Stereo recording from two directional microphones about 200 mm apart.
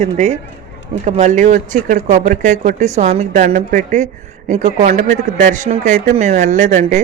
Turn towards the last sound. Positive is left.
turn(degrees=-35)  # may be behind; listen again after turning